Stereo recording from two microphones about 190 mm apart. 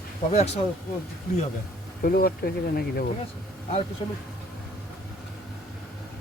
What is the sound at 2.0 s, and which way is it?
Speech, 50° left (ahead or behind).